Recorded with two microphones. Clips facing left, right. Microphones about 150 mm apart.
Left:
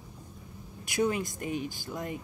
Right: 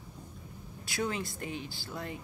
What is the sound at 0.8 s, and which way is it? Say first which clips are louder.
Speech: left 6 dB; 15° left (ahead or behind).